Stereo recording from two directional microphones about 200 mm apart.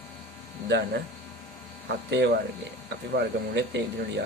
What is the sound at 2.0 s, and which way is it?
Speech, 60° right (ahead or behind).